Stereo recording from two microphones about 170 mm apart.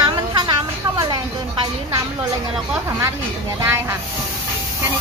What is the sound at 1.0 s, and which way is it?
Speech, 25° right (ahead or behind).